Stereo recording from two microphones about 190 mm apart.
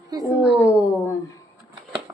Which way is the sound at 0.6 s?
15° left (ahead or behind).